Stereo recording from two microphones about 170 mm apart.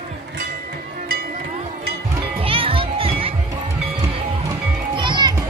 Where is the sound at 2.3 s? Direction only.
35° right (ahead or behind).